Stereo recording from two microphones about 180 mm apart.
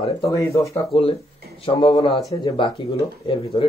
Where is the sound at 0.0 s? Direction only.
20° left (ahead or behind).